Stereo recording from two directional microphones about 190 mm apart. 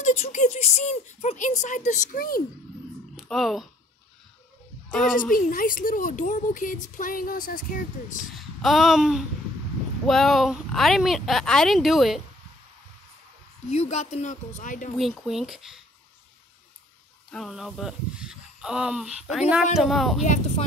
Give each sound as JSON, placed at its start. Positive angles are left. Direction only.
{"t": 0.0, "sound": "speech", "side_deg": 40}
{"t": 3.2, "sound": "speech", "side_deg": 0}
{"t": 5.1, "sound": "a woman's voice", "side_deg": 45}
{"t": 8.4, "sound": "a sound", "side_deg": 0}
{"t": 10.0, "sound": "speech", "side_deg": 0}
{"t": 13.7, "sound": "speech", "side_deg": 35}
{"t": 15.0, "sound": "speech", "side_deg": 0}
{"t": 17.3, "sound": "speech", "side_deg": 0}